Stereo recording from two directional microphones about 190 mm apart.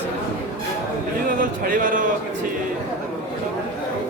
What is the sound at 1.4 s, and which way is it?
Speech, 45° right (ahead or behind).